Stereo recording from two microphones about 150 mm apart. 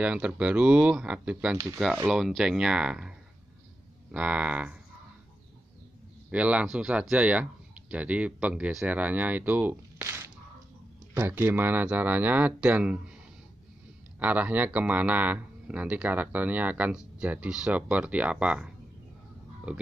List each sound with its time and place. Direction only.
0.0 s speech: 10° right (ahead or behind)
6.3 s speech: 10° right (ahead or behind)
9.9 s squish: 20° right (ahead or behind)
11.1 s speech: 15° right (ahead or behind)
14.2 s speech: 10° right (ahead or behind)